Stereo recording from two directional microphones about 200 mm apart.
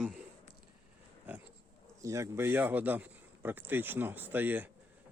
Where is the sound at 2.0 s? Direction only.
15° right (ahead or behind).